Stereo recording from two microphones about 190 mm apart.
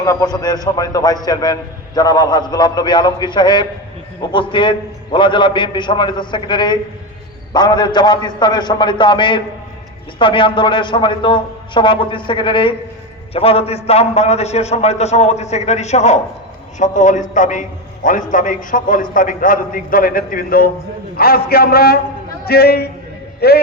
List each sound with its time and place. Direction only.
0.0 s a man's voice: 20° left (ahead or behind); by 23.6 s 55° left (ahead or behind)